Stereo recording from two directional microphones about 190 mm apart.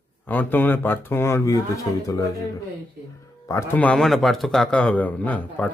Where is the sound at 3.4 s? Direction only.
10° left (ahead or behind).